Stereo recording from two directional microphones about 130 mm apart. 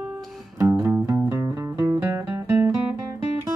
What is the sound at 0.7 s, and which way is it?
Music, 15° right (ahead or behind).